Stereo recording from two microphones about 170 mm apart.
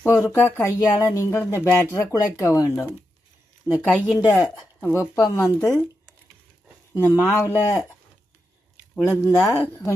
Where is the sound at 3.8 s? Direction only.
Centre (ahead or behind).